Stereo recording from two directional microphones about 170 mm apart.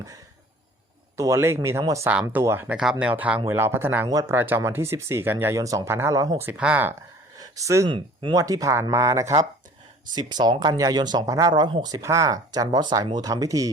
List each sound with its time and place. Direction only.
1.1 s speech: 15° right (ahead or behind)
7.3 s a sound: 20° right (ahead or behind)
7.9 s speech: 30° right (ahead or behind)